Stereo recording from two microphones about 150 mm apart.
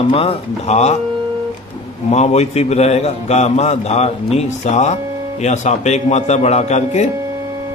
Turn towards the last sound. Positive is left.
turn(degrees=50)  # may be behind; listen again after turning